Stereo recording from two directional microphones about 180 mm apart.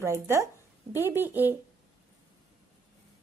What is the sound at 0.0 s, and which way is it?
A woman's voice, 15° right (ahead or behind).